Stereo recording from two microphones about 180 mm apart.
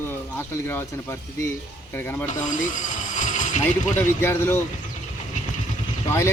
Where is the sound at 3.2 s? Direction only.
45° left (ahead or behind).